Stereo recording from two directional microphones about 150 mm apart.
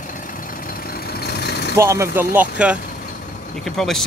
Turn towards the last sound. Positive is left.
turn(degrees=5)  # may be behind; listen again after turning